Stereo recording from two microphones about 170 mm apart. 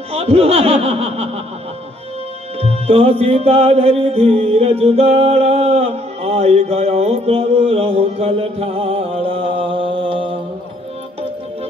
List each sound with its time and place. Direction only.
0.1 s speech: 35° right (ahead or behind)
2.6 s music: 35° right (ahead or behind)